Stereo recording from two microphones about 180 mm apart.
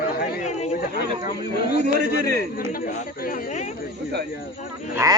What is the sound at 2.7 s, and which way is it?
Speech, 50° left (ahead or behind).